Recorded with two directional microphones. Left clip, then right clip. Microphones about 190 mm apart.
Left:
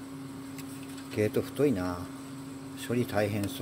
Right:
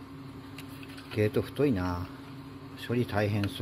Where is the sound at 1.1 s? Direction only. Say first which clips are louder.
Even; 15° right (ahead or behind).